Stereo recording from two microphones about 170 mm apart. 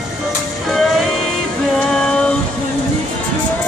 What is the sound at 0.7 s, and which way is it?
Music, centre (ahead or behind).